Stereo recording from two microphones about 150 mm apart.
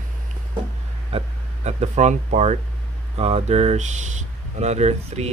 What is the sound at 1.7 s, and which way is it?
Speech, 50° right (ahead or behind).